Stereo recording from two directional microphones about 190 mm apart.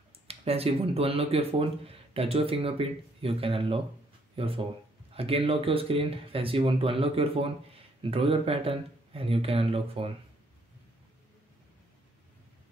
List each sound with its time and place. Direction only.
0.3 s speech: 30° right (ahead or behind)